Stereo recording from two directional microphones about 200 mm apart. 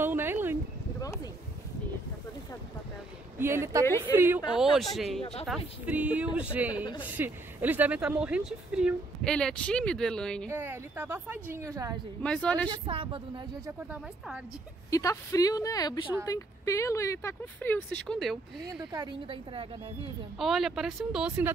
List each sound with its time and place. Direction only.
0.0 s a sound: 10° right (ahead or behind)
1.0 s a sound: 15° left (ahead or behind)
3.3 s speech: 10° right (ahead or behind)
4.6 s speech: centre (ahead or behind)
10.5 s speech: 10° right (ahead or behind)
12.2 s speech: 5° left (ahead or behind)
12.6 s a woman's voice: 25° right (ahead or behind)
13.7 s speech: 5° right (ahead or behind)
14.9 s speech: 15° left (ahead or behind)
18.9 s a woman's voice: 20° right (ahead or behind)
20.3 s speech: centre (ahead or behind)